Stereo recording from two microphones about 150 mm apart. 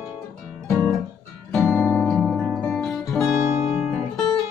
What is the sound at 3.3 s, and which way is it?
Music, 20° right (ahead or behind).